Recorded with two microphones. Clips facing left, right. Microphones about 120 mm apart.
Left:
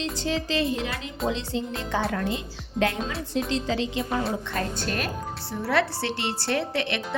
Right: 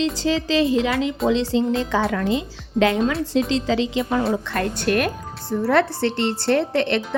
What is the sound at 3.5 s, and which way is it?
Speech, 90° right.